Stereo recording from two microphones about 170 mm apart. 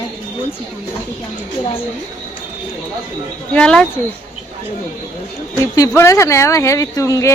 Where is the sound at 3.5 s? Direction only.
5° left (ahead or behind).